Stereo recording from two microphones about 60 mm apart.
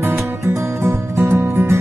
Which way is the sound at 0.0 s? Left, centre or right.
Right.